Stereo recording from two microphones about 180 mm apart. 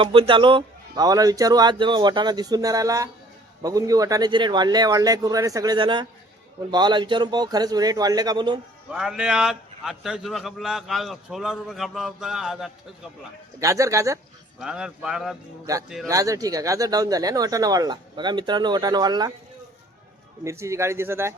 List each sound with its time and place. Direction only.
0.0 s speech: 30° right (ahead or behind)
8.9 s a man's voice: 5° right (ahead or behind)
13.6 s a man's voice: 20° right (ahead or behind)
14.6 s a man's voice: 5° right (ahead or behind)
16.0 s speech: 20° right (ahead or behind)
20.4 s a man's voice: 15° right (ahead or behind)